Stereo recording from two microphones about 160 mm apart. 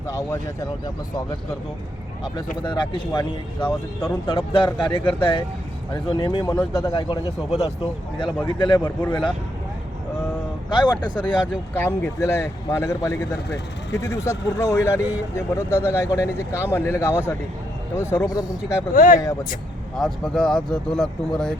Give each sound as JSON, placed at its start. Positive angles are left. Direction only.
{"t": 0.1, "sound": "speech", "side_deg": 20}
{"t": 2.6, "sound": "a man's voice", "side_deg": 30}
{"t": 6.9, "sound": "speech", "side_deg": 35}
{"t": 8.4, "sound": "speech", "side_deg": 30}
{"t": 8.8, "sound": "a man's voice", "side_deg": 10}
{"t": 10.7, "sound": "speech", "side_deg": 30}
{"t": 11.7, "sound": "a man's voice", "side_deg": 15}
{"t": 18.9, "sound": "speech", "side_deg": 55}
{"t": 20.0, "sound": "speech", "side_deg": 0}